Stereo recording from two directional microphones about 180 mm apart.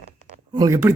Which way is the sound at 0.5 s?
20° right (ahead or behind).